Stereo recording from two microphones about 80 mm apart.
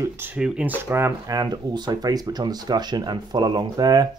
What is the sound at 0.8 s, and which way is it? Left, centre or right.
Speech, right.